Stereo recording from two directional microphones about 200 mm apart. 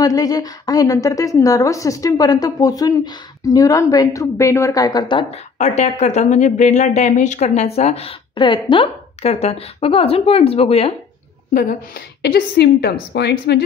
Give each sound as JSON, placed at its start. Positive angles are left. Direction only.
{"t": 0.0, "sound": "a woman's voice", "side_deg": 20}
{"t": 5.6, "sound": "speech", "side_deg": 35}
{"t": 12.2, "sound": "a woman's voice", "side_deg": 55}